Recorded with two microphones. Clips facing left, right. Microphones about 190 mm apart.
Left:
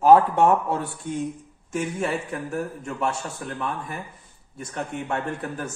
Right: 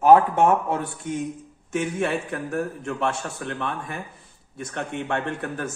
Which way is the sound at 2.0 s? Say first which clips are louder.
Right 1 dB; 65° right (ahead or behind).